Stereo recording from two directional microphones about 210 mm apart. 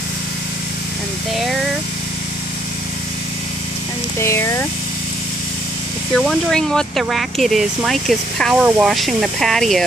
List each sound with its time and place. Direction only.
1.3 s a sound: centre (ahead or behind)
4.2 s speech: 15° left (ahead or behind)
6.1 s speech: centre (ahead or behind)